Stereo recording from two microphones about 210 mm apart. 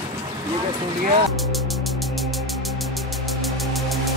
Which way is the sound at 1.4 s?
Centre (ahead or behind).